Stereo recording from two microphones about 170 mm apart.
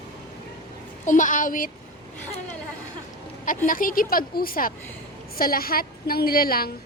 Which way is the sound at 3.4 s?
55° left (ahead or behind).